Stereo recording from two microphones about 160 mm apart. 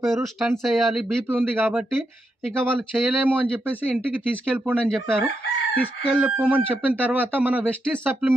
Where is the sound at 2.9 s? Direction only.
5° right (ahead or behind).